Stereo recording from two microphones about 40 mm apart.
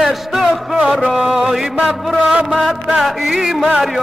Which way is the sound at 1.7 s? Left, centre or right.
Centre.